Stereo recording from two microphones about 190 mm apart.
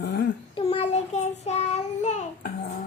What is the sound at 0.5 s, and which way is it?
Child singing, 35° left (ahead or behind).